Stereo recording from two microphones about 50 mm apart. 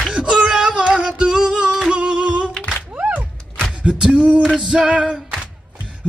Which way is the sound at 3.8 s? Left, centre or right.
Centre.